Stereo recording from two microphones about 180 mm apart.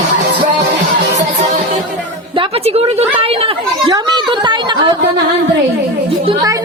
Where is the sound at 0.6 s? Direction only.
70° right (ahead or behind).